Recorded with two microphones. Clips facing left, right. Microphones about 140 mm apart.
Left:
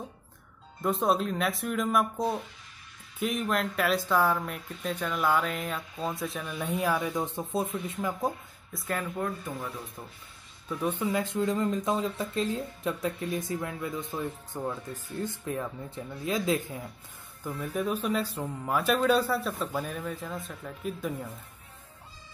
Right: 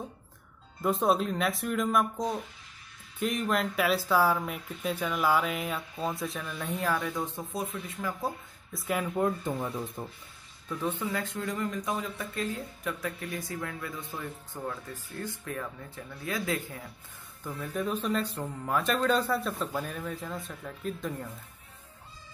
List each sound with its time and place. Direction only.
0.8 s speech: centre (ahead or behind)
6.4 s speech: 10° left (ahead or behind)
8.7 s speech: 10° right (ahead or behind)
9.1 s speech: 20° right (ahead or behind)
10.7 s speech: 15° left (ahead or behind)
17.5 s speech: 10° left (ahead or behind)